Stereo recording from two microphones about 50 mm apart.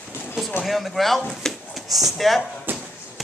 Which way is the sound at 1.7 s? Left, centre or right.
Centre.